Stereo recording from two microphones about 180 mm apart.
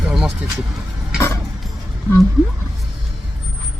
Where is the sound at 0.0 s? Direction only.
Centre (ahead or behind).